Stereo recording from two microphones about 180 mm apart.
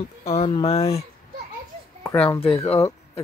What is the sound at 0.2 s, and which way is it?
Speech, 35° left (ahead or behind).